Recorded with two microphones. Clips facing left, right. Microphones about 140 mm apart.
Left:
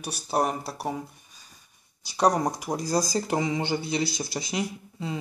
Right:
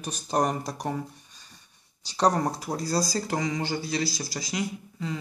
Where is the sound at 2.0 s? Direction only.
10° left (ahead or behind).